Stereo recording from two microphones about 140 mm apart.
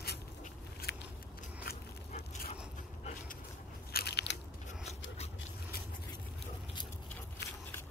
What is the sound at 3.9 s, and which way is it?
Crunch, 90° left.